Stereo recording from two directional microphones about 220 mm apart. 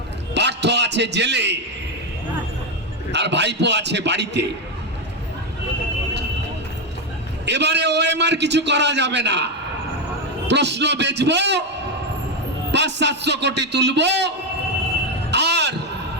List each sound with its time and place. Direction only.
0.3 s a sound: 50° right (ahead or behind)
3.1 s a man's voice: 50° right (ahead or behind)
7.4 s a man's voice: 50° right (ahead or behind)
10.5 s a man's voice: 50° right (ahead or behind)
12.7 s a man's voice: 50° right (ahead or behind)
15.3 s a sound: 50° right (ahead or behind)